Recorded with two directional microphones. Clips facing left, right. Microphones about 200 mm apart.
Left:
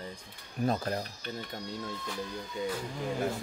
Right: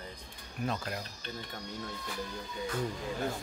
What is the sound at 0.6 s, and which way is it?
Speech, 35° left (ahead or behind).